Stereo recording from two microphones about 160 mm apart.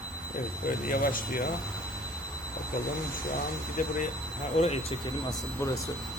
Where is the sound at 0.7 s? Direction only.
60° left (ahead or behind).